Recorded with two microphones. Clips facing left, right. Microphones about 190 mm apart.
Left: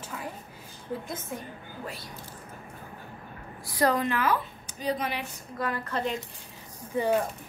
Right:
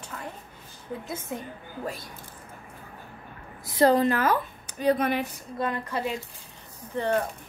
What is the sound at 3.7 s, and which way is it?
Speech, 25° right (ahead or behind).